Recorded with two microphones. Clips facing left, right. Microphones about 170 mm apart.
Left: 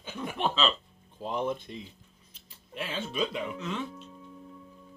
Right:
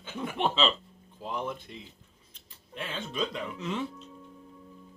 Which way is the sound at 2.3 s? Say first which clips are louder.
Left 1 dB; 10° left (ahead or behind).